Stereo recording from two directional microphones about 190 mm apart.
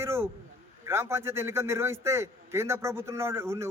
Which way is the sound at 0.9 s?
15° right (ahead or behind).